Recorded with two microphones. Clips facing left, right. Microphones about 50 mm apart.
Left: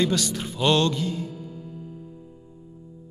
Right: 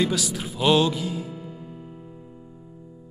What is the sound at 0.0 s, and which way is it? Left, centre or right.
Speech, centre.